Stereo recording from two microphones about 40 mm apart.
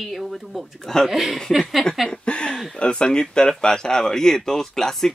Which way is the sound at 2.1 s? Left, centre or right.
Left.